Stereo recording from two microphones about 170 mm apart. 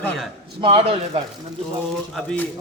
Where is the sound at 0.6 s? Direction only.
30° right (ahead or behind).